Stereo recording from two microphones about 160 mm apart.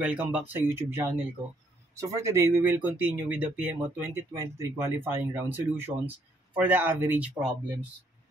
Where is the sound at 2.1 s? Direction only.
20° right (ahead or behind).